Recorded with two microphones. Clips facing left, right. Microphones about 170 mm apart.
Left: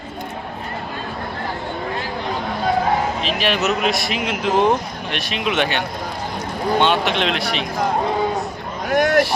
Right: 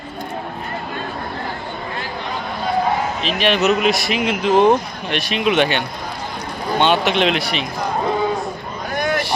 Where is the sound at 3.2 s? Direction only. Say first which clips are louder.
Right 3 dB; 5° left (ahead or behind).